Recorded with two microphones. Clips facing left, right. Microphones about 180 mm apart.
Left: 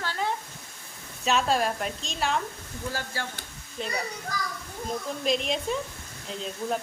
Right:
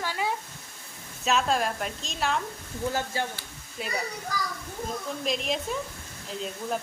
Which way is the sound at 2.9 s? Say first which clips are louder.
Right 4 dB; 20° right (ahead or behind).